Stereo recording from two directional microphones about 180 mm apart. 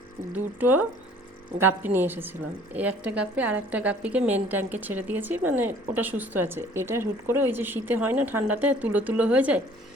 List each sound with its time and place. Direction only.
0.3 s a woman's voice: 10° right (ahead or behind)